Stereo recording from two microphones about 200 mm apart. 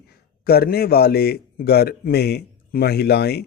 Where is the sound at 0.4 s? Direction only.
50° left (ahead or behind).